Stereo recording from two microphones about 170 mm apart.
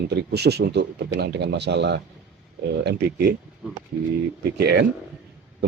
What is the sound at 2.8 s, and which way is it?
Speech, 75° right (ahead or behind).